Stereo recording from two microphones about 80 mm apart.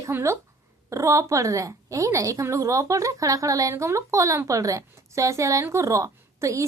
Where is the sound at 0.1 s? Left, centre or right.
Right.